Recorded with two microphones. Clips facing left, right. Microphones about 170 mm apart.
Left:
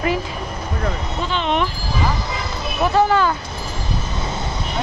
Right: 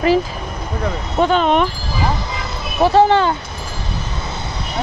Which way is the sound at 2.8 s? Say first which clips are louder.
Right 4 dB; 30° right (ahead or behind).